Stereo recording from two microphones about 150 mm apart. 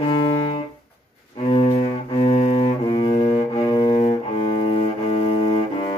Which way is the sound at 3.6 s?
30° left (ahead or behind).